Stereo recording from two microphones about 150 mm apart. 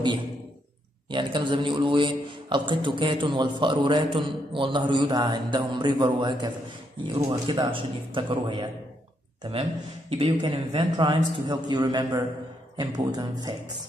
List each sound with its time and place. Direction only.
1.1 s a man's voice: 30° right (ahead or behind)